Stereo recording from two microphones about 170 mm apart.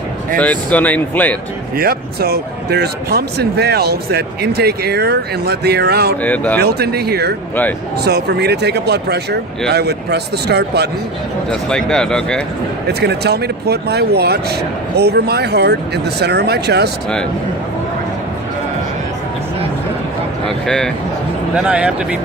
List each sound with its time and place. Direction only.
0.3 s speech: 10° left (ahead or behind)
1.7 s speech: 65° right (ahead or behind)
6.2 s speech: 10° left (ahead or behind)
6.6 s speech: 70° right (ahead or behind)
11.4 s speech: 5° left (ahead or behind)
12.9 s speech: 75° right (ahead or behind)
20.5 s speech: 5° left (ahead or behind)